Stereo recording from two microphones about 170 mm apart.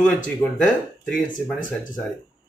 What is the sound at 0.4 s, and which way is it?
Speech, 5° left (ahead or behind).